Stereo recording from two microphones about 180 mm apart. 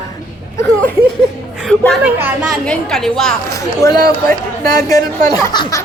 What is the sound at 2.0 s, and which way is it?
Speech, 5° right (ahead or behind).